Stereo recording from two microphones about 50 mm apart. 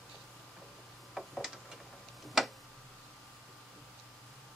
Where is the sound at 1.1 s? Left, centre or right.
Centre.